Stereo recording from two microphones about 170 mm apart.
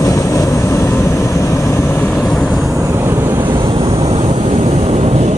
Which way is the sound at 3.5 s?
30° right (ahead or behind).